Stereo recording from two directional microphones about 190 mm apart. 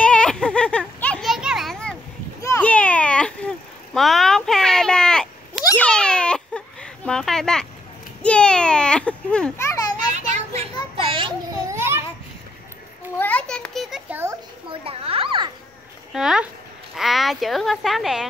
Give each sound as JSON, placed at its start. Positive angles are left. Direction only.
{"t": 0.0, "sound": "children playing", "side_deg": 5}
{"t": 2.4, "sound": "a sound", "side_deg": 10}
{"t": 5.8, "sound": "baby cry", "side_deg": 5}
{"t": 8.2, "sound": "children playing", "side_deg": 5}
{"t": 10.1, "sound": "children playing", "side_deg": -40}
{"t": 11.7, "sound": "babbling", "side_deg": -15}
{"t": 13.2, "sound": "a sound", "side_deg": 5}
{"t": 14.7, "sound": "children playing", "side_deg": -30}
{"t": 16.1, "sound": "a sound", "side_deg": -5}
{"t": 16.9, "sound": "speech", "side_deg": 0}